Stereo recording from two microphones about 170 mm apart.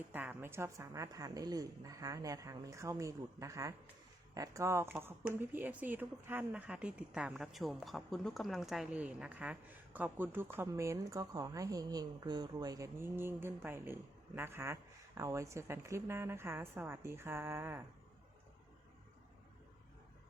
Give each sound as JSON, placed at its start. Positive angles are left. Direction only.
{"t": 0.1, "sound": "a woman's voice", "side_deg": -10}